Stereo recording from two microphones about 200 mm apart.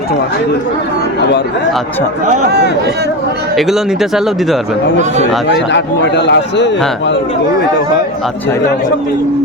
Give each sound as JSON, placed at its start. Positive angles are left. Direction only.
{"t": 2.5, "sound": "speech", "side_deg": -55}
{"t": 3.5, "sound": "speech", "side_deg": 0}
{"t": 5.5, "sound": "a man's voice", "side_deg": 60}